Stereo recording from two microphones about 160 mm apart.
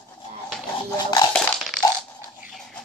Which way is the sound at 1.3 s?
Centre (ahead or behind).